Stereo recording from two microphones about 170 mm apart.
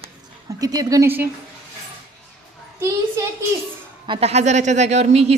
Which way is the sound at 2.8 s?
15° right (ahead or behind).